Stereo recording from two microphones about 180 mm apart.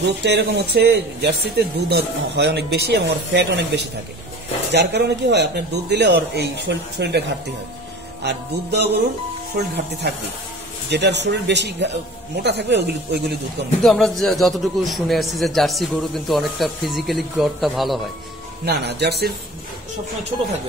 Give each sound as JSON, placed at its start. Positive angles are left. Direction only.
{"t": 0.0, "sound": "speech", "side_deg": -70}
{"t": 13.8, "sound": "a man's voice", "side_deg": 0}
{"t": 18.7, "sound": "speech", "side_deg": -70}